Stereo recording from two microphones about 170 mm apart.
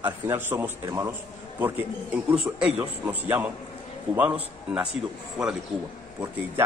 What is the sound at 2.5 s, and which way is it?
A man's voice, 5° right (ahead or behind).